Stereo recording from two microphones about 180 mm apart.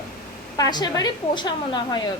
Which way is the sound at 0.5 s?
20° left (ahead or behind).